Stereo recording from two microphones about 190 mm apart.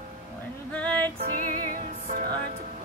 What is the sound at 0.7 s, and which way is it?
Music, 5° left (ahead or behind).